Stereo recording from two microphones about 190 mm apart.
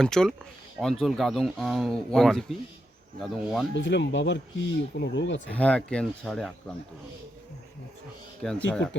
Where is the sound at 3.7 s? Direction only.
70° left (ahead or behind).